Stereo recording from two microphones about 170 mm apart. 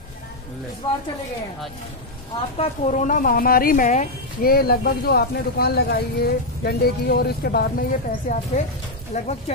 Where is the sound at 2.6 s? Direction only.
45° left (ahead or behind); by 7.7 s 65° left (ahead or behind).